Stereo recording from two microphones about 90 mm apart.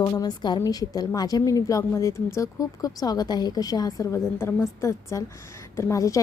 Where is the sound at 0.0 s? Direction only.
45° left (ahead or behind).